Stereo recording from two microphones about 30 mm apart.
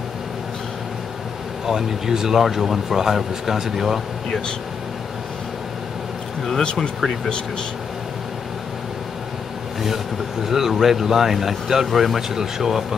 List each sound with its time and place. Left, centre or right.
1.7 s speech: centre
6.6 s speech: left
10.4 s speech: centre